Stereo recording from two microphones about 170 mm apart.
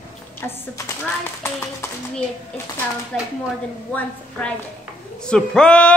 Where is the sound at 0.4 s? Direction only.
15° left (ahead or behind).